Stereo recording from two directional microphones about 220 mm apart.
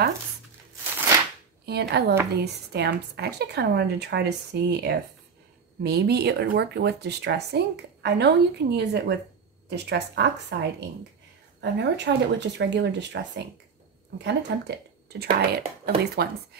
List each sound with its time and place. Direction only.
1.7 s speech: 50° right (ahead or behind)